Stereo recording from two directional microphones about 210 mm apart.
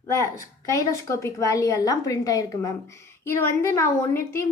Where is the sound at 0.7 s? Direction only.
15° left (ahead or behind).